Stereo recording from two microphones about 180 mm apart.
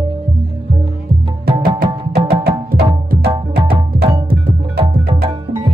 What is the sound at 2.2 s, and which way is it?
Music, 60° right (ahead or behind).